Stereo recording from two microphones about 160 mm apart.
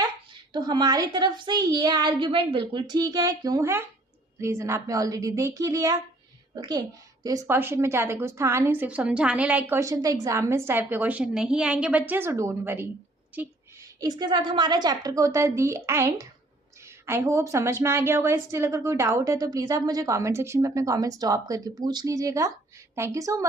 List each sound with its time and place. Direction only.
0.5 s a woman's voice: 25° right (ahead or behind)
14.0 s a woman's voice: 25° right (ahead or behind)